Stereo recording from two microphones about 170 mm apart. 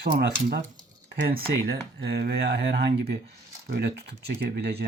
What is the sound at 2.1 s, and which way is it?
Speech, 75° right (ahead or behind).